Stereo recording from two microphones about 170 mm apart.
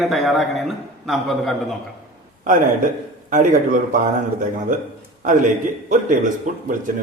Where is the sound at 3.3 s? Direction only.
50° right (ahead or behind).